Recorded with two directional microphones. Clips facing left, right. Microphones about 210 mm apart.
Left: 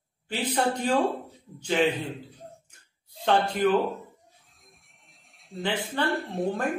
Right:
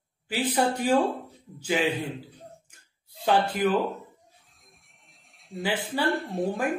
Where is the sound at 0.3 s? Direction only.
10° right (ahead or behind).